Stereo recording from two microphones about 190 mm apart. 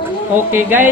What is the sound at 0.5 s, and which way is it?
Speech, 10° right (ahead or behind).